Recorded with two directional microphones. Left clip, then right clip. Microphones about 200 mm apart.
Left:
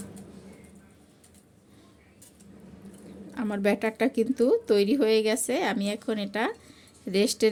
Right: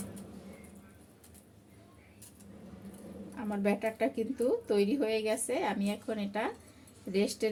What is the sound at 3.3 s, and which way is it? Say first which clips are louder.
A woman's voice: left 6 dB; 60° left (ahead or behind).